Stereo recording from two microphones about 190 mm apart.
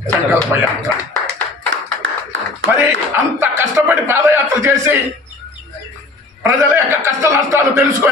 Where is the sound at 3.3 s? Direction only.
10° right (ahead or behind).